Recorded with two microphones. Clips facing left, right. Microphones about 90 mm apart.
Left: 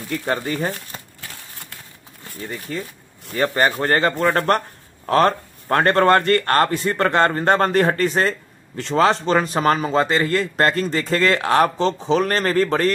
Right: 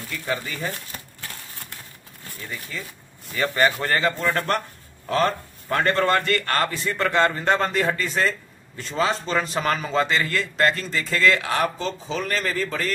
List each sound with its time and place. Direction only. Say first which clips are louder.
0.1 s speech: left 6 dB; 50° left (ahead or behind)
2.4 s speech: left 6 dB; 40° left (ahead or behind)
8.7 s a man's voice: left 7 dB; 65° left (ahead or behind)
9.4 s speech: left 5 dB; 40° left (ahead or behind)
12.1 s speech: left 6 dB; 55° left (ahead or behind)